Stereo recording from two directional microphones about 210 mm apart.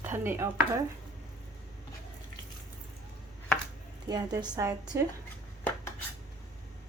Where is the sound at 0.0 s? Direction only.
10° right (ahead or behind).